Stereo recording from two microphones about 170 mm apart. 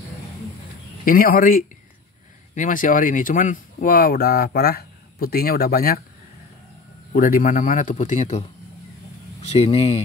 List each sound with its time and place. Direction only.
1.0 s speech: 60° left (ahead or behind)
7.1 s a man's voice: 50° left (ahead or behind); by 10.0 s 35° left (ahead or behind)